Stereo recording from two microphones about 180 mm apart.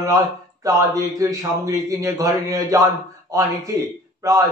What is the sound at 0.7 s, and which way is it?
A man's voice, 20° right (ahead or behind).